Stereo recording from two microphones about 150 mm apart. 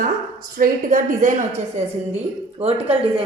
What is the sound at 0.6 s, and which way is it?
Speech, 65° right (ahead or behind).